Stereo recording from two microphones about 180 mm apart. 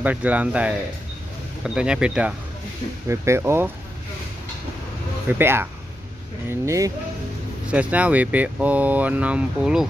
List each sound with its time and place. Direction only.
0.0 s speech: 10° right (ahead or behind)
5.4 s speech: 10° right (ahead or behind)